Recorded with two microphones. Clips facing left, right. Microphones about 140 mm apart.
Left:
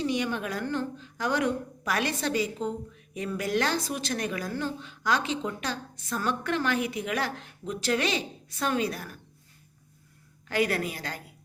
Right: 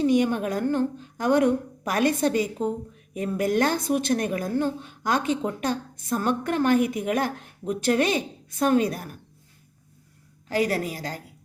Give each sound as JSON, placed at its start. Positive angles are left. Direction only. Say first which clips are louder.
{"t": 0.0, "sound": "a woman's voice", "louder": "right 7 dB", "side_deg": -50}
{"t": 10.5, "sound": "a woman's voice", "louder": "right 3 dB", "side_deg": -40}